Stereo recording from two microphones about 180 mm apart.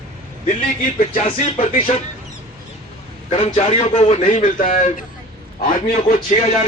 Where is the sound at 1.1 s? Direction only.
30° left (ahead or behind).